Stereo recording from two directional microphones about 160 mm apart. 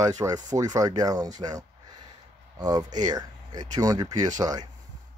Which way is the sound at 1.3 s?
25° right (ahead or behind).